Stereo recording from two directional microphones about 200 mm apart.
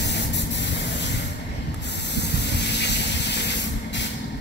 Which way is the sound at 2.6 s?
60° left (ahead or behind).